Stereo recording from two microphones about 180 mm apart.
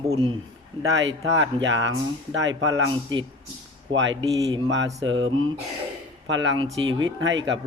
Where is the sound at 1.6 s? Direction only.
90° right.